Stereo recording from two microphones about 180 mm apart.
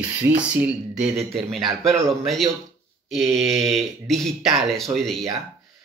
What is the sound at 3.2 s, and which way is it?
Speech, 15° right (ahead or behind).